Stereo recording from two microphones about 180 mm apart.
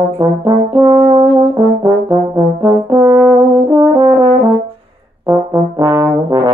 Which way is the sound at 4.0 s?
25° right (ahead or behind).